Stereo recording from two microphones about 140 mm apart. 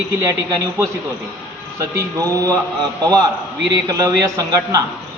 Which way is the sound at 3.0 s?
30° right (ahead or behind).